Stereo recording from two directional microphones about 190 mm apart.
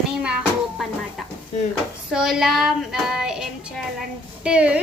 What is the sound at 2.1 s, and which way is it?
Child singing, 5° right (ahead or behind).